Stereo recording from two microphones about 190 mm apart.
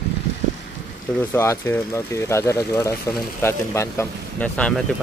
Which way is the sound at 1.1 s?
15° left (ahead or behind).